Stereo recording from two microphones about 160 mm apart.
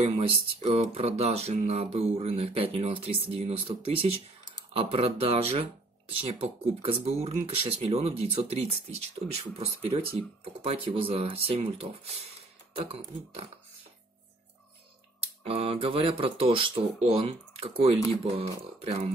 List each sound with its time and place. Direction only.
0.0 s speech: 35° right (ahead or behind)
15.4 s speech: 35° right (ahead or behind)